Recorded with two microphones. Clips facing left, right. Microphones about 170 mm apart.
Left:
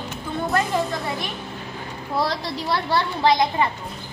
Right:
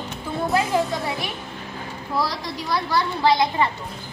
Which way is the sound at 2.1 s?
25° left (ahead or behind).